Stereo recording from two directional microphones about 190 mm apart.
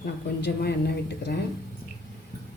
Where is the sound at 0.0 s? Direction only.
60° left (ahead or behind).